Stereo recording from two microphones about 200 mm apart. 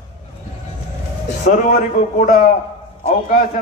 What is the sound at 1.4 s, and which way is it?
A man's voice, 40° left (ahead or behind).